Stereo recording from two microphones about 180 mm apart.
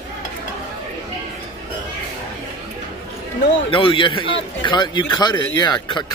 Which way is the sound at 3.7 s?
30° left (ahead or behind).